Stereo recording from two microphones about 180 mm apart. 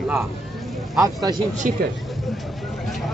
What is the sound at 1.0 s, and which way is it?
Speech, 20° right (ahead or behind).